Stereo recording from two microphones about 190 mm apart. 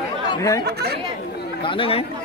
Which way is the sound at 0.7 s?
60° right (ahead or behind).